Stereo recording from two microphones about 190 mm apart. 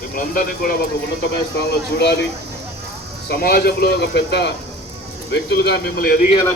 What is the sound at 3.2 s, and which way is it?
Speech, 55° left (ahead or behind).